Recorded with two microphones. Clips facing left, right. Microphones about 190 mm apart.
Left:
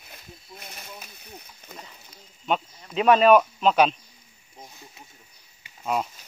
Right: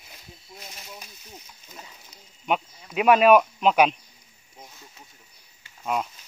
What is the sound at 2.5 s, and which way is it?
Speech, 10° right (ahead or behind).